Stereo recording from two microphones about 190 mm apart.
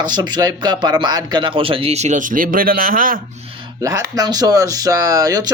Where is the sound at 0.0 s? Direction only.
20° right (ahead or behind); by 3.2 s 45° right (ahead or behind).